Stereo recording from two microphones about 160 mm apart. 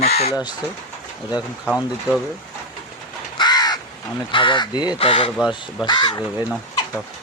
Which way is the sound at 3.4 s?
25° left (ahead or behind).